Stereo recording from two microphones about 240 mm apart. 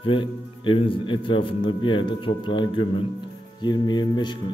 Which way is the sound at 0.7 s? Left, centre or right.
Left.